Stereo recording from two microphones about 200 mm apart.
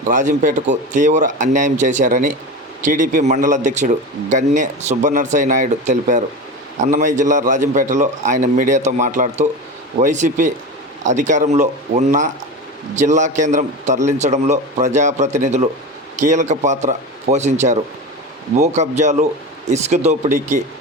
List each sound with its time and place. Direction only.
0.1 s a man's voice: 40° right (ahead or behind)